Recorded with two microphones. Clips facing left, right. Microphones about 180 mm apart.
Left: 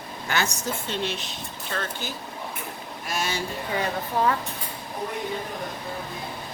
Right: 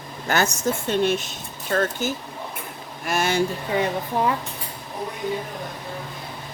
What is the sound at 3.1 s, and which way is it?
Speech, 55° right (ahead or behind).